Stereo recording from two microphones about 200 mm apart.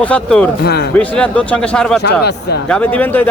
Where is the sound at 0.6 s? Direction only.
55° left (ahead or behind).